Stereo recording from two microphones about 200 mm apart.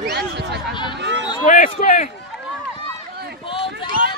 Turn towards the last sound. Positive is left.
turn(degrees=25)  # may be behind; listen again after turning